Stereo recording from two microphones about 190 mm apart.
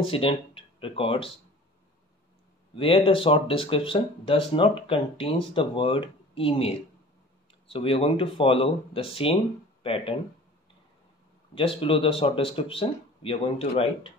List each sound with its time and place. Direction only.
0.0 s speech: 30° left (ahead or behind)
2.7 s speech: 30° left (ahead or behind)
11.5 s speech: 30° left (ahead or behind)